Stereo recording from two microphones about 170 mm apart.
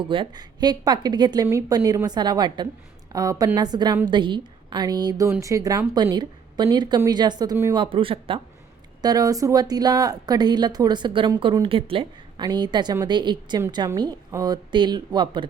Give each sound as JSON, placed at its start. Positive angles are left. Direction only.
{"t": 0.0, "sound": "speech", "side_deg": -30}
{"t": 7.8, "sound": "speech", "side_deg": -30}